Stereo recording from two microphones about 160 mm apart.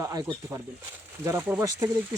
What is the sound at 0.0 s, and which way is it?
Speech, 20° right (ahead or behind).